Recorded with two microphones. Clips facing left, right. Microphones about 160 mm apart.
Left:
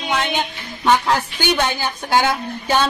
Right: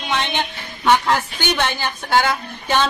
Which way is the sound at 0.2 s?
10° left (ahead or behind).